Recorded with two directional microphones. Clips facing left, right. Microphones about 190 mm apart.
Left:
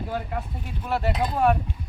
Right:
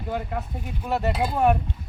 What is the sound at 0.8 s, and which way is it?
Speech, 5° right (ahead or behind).